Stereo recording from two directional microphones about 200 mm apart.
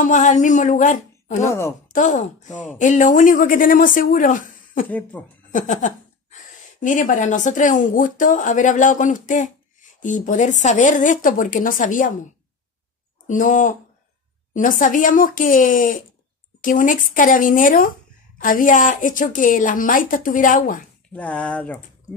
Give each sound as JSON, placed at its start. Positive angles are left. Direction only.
{"t": 0.0, "sound": "speech", "side_deg": 40}
{"t": 1.5, "sound": "speech", "side_deg": 15}
{"t": 1.9, "sound": "speech", "side_deg": 40}
{"t": 4.8, "sound": "speech", "side_deg": 10}
{"t": 5.5, "sound": "speech", "side_deg": 40}
{"t": 13.3, "sound": "speech", "side_deg": 40}
{"t": 21.1, "sound": "speech", "side_deg": 5}